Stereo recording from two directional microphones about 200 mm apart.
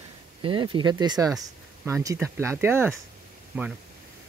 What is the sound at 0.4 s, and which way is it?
Speech, 25° right (ahead or behind).